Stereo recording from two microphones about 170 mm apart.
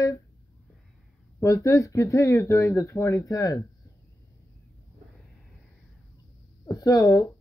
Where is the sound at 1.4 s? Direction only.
20° left (ahead or behind).